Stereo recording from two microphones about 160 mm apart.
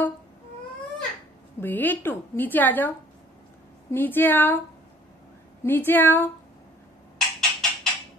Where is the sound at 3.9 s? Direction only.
10° left (ahead or behind).